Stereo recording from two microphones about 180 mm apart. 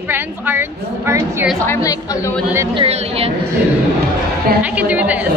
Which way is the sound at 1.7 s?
20° left (ahead or behind).